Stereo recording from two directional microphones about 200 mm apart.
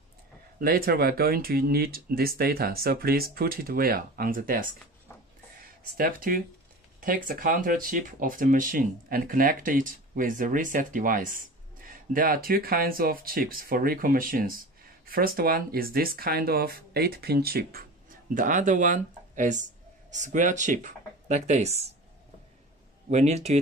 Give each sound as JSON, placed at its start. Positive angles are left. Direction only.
{"t": 0.6, "sound": "speech", "side_deg": -50}
{"t": 5.9, "sound": "speech", "side_deg": -45}
{"t": 23.0, "sound": "speech", "side_deg": -35}